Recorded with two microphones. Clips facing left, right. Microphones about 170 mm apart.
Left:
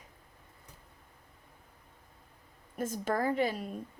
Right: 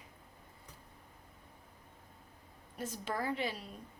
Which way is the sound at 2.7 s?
50° left (ahead or behind).